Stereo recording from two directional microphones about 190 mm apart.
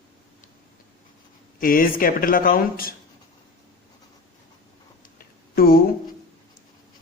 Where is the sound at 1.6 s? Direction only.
50° left (ahead or behind).